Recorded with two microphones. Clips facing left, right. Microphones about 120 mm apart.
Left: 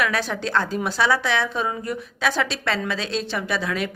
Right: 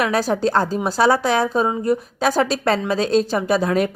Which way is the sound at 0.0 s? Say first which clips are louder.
Right 6 dB; 40° right (ahead or behind).